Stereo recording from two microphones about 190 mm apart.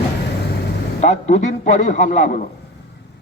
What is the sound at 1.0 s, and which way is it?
A man's voice, 35° left (ahead or behind).